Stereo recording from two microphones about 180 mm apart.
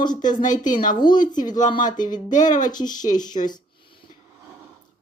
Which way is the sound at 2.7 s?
20° left (ahead or behind).